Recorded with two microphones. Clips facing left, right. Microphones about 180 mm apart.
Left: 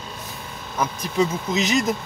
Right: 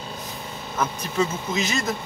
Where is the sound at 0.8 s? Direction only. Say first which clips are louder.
Left 2 dB; 15° left (ahead or behind).